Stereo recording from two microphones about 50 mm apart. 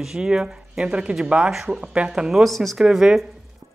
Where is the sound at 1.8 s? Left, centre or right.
Right.